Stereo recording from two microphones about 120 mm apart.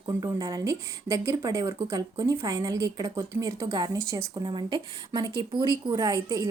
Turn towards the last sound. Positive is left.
turn(degrees=-30)  # may be behind; listen again after turning